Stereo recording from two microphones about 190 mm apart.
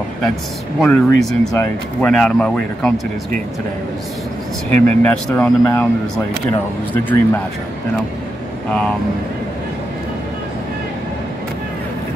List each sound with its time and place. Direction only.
0.7 s speech: 5° left (ahead or behind)
4.8 s speech: 10° left (ahead or behind)